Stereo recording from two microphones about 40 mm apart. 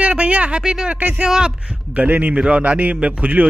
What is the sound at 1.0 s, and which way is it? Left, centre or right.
A man's voice, right.